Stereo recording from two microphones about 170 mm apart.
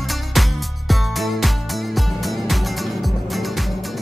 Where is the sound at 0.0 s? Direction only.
Centre (ahead or behind).